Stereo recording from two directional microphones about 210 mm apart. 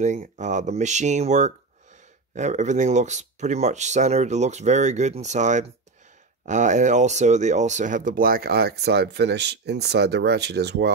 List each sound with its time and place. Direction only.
0.0 s speech: 35° right (ahead or behind); by 10.9 s 50° right (ahead or behind)